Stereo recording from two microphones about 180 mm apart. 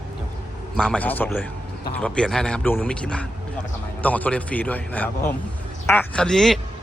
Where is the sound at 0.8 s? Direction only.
5° left (ahead or behind).